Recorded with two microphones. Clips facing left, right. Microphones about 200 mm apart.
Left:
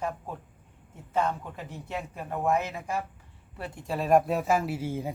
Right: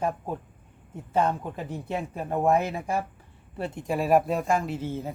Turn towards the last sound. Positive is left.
turn(degrees=10)  # may be behind; listen again after turning